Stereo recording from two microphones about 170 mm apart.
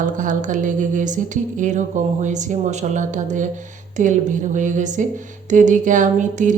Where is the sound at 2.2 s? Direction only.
45° right (ahead or behind).